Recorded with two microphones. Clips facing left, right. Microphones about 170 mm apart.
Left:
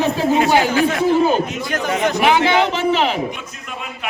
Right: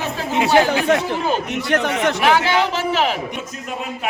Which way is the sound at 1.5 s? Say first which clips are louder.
Right 3 dB; 70° right (ahead or behind).